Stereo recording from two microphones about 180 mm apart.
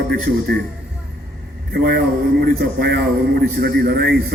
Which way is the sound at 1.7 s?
55° right (ahead or behind).